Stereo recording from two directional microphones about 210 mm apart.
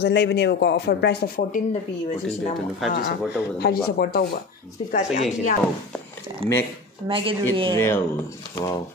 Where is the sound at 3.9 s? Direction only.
50° left (ahead or behind).